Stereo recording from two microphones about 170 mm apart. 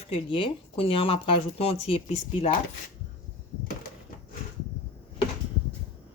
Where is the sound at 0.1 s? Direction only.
30° left (ahead or behind).